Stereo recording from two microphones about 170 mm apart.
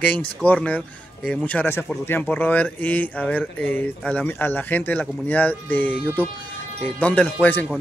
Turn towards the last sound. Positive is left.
turn(degrees=10)  # may be behind; listen again after turning